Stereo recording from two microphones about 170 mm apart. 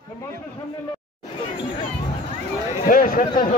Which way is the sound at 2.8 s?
55° left (ahead or behind).